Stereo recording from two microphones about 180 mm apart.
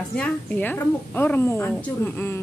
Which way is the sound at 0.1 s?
10° left (ahead or behind).